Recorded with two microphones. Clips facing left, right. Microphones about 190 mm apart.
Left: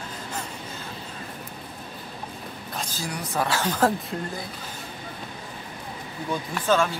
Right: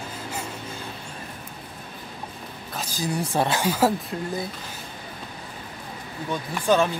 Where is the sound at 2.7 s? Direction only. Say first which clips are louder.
Right 2 dB; 10° right (ahead or behind).